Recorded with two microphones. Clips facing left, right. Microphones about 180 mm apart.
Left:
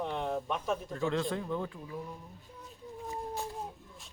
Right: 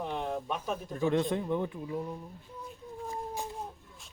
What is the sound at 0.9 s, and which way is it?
A man's voice, 20° right (ahead or behind).